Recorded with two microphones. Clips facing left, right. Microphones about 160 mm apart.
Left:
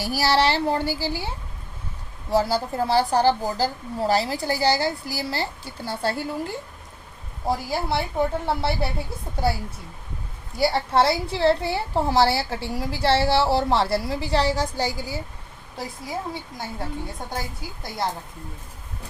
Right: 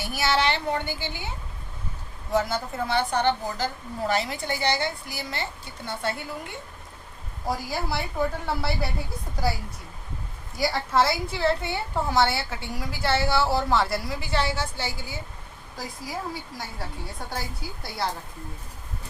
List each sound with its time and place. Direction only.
0.0 s a woman's voice: 35° left (ahead or behind)
2.3 s a woman's voice: 35° left (ahead or behind)
10.6 s a woman's voice: 30° left (ahead or behind)
15.8 s a woman's voice: 25° left (ahead or behind)